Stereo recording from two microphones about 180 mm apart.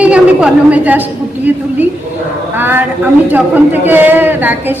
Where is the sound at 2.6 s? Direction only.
10° right (ahead or behind).